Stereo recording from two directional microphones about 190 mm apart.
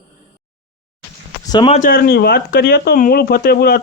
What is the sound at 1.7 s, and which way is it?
Speech, 45° left (ahead or behind).